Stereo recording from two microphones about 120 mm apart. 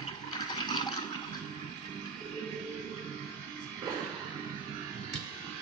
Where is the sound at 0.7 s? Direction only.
40° left (ahead or behind).